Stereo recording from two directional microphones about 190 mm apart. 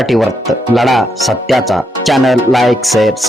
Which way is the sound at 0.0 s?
Centre (ahead or behind).